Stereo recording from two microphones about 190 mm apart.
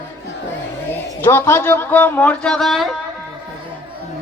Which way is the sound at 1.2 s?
10° left (ahead or behind).